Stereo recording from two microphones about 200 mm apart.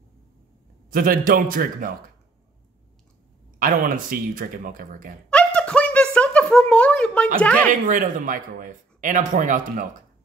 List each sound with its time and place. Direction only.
0.8 s speech: 45° right (ahead or behind)
3.5 s speech: 45° right (ahead or behind)
5.3 s a sound: 5° left (ahead or behind)
7.3 s speech: 5° left (ahead or behind)
7.8 s speech: 40° right (ahead or behind)